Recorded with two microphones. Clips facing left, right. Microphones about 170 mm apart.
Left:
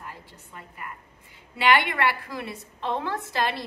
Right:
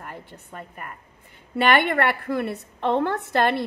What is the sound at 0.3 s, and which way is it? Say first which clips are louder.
A woman's voice: right 6 dB; 55° right (ahead or behind).